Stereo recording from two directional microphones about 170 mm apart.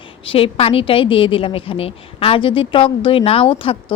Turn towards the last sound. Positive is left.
turn(degrees=30)  # may be behind; listen again after turning